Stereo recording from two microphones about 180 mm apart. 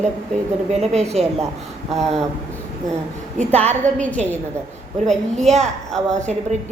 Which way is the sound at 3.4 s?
35° right (ahead or behind).